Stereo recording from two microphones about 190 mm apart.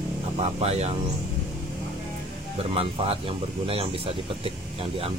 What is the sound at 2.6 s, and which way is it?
Speech, 30° right (ahead or behind).